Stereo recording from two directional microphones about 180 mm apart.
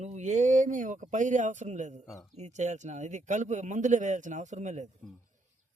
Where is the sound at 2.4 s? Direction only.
40° right (ahead or behind).